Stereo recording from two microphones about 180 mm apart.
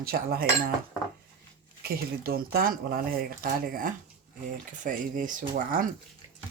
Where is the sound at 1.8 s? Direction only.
55° right (ahead or behind).